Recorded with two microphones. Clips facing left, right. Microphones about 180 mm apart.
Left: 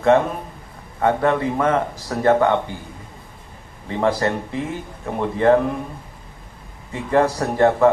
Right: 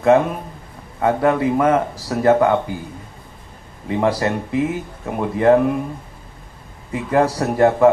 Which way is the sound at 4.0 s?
5° right (ahead or behind).